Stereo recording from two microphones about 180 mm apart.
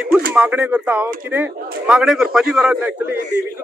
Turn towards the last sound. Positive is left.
turn(degrees=-5)  # may be behind; listen again after turning